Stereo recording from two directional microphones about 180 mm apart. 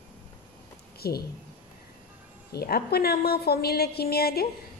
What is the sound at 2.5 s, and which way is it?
A woman's voice, 60° left (ahead or behind).